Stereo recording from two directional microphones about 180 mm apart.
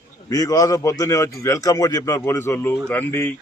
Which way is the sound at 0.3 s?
20° left (ahead or behind).